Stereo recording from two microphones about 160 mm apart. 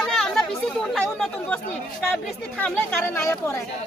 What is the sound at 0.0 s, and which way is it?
Chatter, 5° left (ahead or behind).